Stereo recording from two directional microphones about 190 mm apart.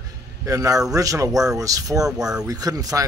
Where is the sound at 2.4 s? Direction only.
20° right (ahead or behind).